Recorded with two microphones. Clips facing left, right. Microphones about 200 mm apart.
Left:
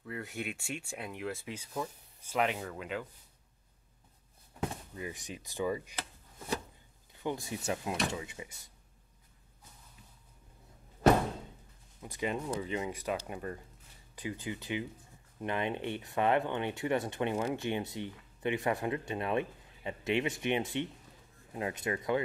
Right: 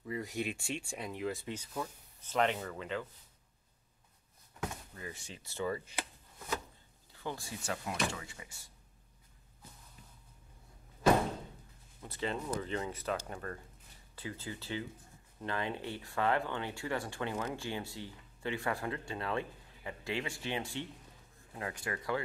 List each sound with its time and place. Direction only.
0.3 s speech: 5° left (ahead or behind)
4.9 s speech: 15° left (ahead or behind)
7.2 s speech: 20° left (ahead or behind)
12.0 s speech: 15° left (ahead or behind)